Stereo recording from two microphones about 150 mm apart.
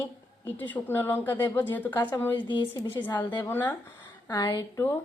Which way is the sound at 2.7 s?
15° left (ahead or behind).